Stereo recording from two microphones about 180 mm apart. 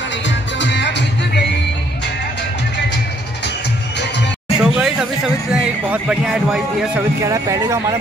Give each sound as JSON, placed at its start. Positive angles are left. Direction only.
{"t": 0.6, "sound": "music", "side_deg": 75}
{"t": 4.6, "sound": "a sound", "side_deg": -5}
{"t": 7.2, "sound": "speech", "side_deg": -20}